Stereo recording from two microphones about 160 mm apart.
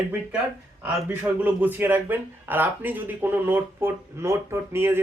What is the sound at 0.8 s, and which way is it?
A man's voice, 10° right (ahead or behind).